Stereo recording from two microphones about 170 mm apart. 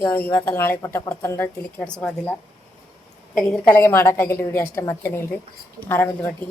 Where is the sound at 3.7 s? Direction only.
15° left (ahead or behind).